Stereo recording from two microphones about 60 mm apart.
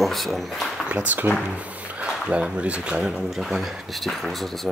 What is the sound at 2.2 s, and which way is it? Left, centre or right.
Speech, centre.